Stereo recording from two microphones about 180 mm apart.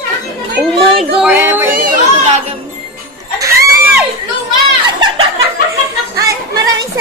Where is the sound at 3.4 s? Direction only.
15° right (ahead or behind).